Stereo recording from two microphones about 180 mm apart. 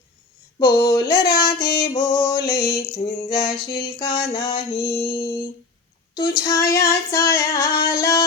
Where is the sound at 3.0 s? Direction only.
30° left (ahead or behind).